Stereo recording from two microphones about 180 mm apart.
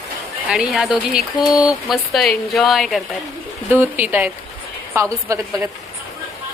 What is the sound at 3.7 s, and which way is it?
A woman's voice, 10° right (ahead or behind).